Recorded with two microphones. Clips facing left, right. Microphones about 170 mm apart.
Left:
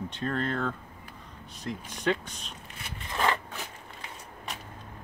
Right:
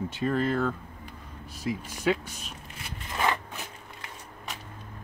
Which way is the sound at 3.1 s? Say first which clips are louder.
Even; 10° right (ahead or behind).